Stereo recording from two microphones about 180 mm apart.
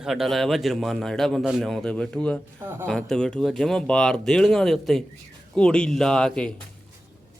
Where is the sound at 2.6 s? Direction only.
15° right (ahead or behind).